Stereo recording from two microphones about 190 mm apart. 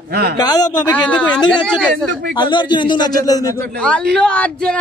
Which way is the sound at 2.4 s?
25° left (ahead or behind).